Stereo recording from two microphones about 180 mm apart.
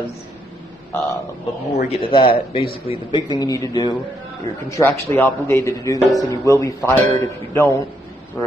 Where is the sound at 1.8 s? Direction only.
35° left (ahead or behind).